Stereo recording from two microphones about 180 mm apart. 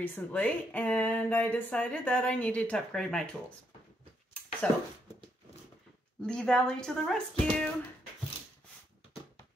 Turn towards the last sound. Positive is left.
turn(degrees=5)  # may be behind; listen again after turning